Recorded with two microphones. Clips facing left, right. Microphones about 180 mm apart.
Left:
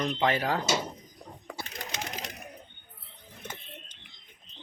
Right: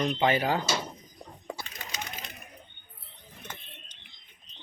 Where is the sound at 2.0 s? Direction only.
90° left.